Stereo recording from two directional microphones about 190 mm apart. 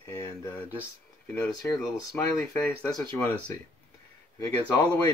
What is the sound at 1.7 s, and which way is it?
Speech, 10° left (ahead or behind).